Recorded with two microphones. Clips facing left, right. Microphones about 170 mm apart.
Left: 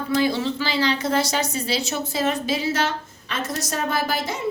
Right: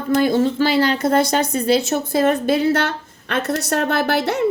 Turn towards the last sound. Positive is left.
turn(degrees=-65)  # may be behind; listen again after turning